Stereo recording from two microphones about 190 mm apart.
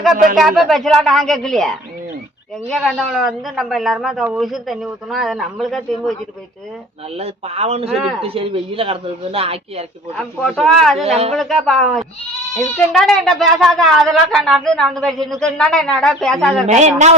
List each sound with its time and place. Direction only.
0.3 s a man's voice: centre (ahead or behind)
7.2 s speech: 30° right (ahead or behind)
7.9 s a man's voice: centre (ahead or behind)
8.2 s speech: 30° right (ahead or behind)
10.2 s a man's voice: 5° left (ahead or behind)
10.9 s speech: 35° right (ahead or behind)
11.3 s a man's voice: centre (ahead or behind)
16.6 s speech: 40° right (ahead or behind)